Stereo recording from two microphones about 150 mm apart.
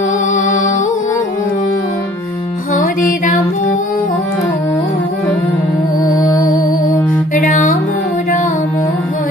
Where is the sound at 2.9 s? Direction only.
65° left (ahead or behind).